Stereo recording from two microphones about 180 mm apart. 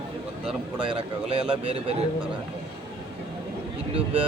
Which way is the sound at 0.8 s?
30° right (ahead or behind).